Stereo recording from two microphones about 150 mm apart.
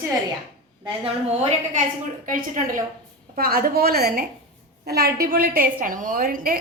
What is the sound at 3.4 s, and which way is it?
A woman's voice, 90° right.